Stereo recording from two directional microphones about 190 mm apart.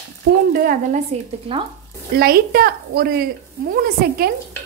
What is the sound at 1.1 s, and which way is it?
Speech, 35° right (ahead or behind).